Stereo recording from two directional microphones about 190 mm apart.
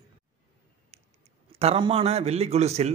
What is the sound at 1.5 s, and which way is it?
A man's voice, 30° right (ahead or behind).